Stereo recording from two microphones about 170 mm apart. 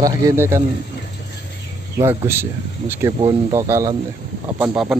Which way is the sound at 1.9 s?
15° right (ahead or behind).